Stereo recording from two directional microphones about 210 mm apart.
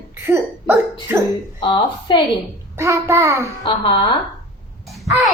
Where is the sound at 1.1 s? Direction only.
10° right (ahead or behind).